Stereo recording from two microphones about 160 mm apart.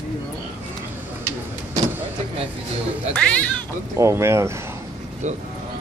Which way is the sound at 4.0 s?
15° right (ahead or behind).